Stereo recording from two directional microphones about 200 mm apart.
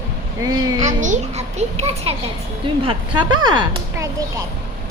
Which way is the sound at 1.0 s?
40° right (ahead or behind).